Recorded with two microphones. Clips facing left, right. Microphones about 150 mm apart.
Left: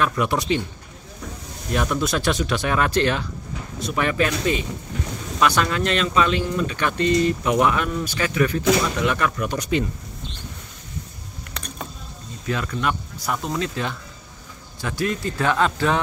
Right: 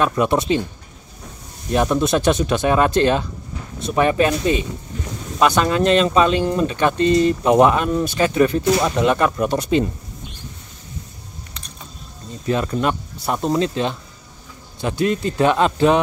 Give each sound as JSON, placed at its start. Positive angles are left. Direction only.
{"t": 0.0, "sound": "speech", "side_deg": -25}
{"t": 1.7, "sound": "speech", "side_deg": -20}
{"t": 12.4, "sound": "speech", "side_deg": -25}